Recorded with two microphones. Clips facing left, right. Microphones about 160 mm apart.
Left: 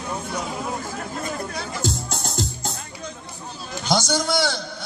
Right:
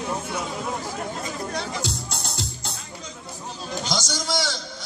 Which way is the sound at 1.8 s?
45° left (ahead or behind).